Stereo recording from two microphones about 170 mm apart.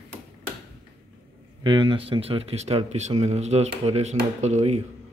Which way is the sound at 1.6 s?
30° right (ahead or behind).